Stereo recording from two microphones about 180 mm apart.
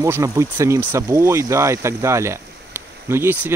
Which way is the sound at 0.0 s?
15° right (ahead or behind).